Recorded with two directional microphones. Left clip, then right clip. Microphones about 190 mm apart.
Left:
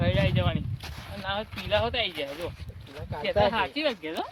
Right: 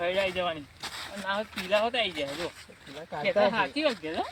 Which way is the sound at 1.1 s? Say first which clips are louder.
Even; 20° left (ahead or behind).